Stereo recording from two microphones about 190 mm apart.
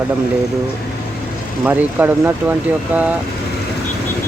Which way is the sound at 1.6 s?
10° right (ahead or behind).